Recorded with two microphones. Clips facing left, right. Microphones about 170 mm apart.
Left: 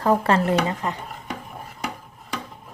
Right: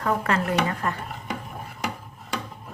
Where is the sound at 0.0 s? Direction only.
30° left (ahead or behind).